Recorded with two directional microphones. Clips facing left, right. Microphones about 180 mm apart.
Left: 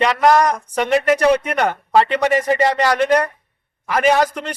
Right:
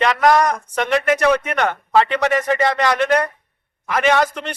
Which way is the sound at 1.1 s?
35° left (ahead or behind).